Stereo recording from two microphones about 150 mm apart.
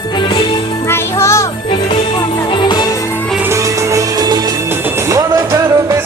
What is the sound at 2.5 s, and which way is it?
Music, 30° left (ahead or behind).